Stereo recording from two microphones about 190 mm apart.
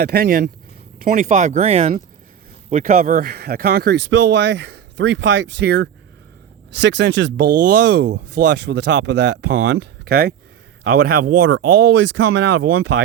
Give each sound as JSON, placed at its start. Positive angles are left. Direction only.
{"t": 0.0, "sound": "speech", "side_deg": -50}
{"t": 2.6, "sound": "speech", "side_deg": -45}
{"t": 4.1, "sound": "speech", "side_deg": -65}
{"t": 11.4, "sound": "speech", "side_deg": -70}